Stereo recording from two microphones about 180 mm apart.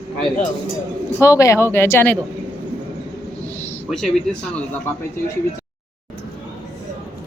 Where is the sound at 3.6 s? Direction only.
10° left (ahead or behind).